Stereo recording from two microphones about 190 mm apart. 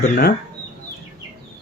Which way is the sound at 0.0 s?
55° left (ahead or behind).